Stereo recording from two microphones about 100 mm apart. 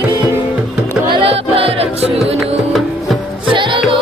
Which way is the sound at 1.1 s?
70° right (ahead or behind).